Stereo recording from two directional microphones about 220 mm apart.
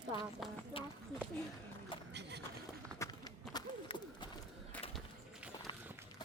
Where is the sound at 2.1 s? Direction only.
50° right (ahead or behind).